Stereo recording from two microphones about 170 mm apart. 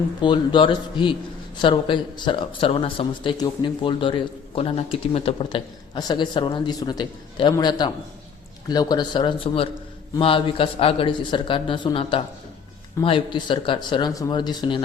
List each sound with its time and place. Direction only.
0.2 s speech: 30° left (ahead or behind)